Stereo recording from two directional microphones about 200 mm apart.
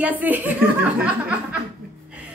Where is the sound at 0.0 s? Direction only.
10° right (ahead or behind).